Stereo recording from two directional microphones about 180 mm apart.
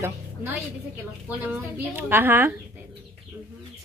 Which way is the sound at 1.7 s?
10° right (ahead or behind).